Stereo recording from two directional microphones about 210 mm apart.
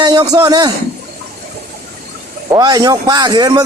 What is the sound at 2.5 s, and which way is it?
Speech, 20° right (ahead or behind).